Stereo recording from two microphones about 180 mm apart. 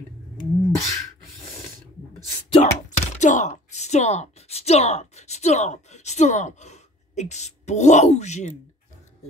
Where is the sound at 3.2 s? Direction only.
40° left (ahead or behind).